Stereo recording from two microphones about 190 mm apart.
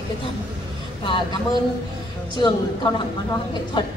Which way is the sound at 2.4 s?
25° left (ahead or behind).